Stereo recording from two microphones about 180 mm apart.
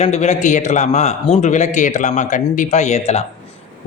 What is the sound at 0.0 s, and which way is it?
A man's voice, 40° left (ahead or behind).